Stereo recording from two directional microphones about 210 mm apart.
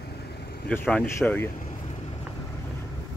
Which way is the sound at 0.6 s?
5° left (ahead or behind).